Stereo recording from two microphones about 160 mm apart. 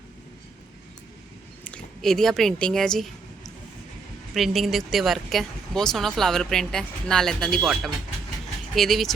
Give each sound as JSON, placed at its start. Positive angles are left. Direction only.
{"t": 1.6, "sound": "speech", "side_deg": 5}
{"t": 4.4, "sound": "speech", "side_deg": 0}